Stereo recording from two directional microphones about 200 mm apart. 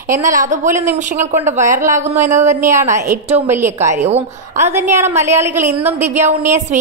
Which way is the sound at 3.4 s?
10° right (ahead or behind).